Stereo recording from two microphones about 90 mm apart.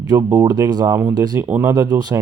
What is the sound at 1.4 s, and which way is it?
Speech, 20° right (ahead or behind).